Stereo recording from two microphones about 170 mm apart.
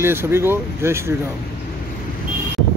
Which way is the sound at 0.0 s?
15° right (ahead or behind).